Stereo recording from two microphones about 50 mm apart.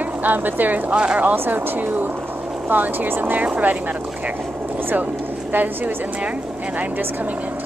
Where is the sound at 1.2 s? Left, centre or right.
Right.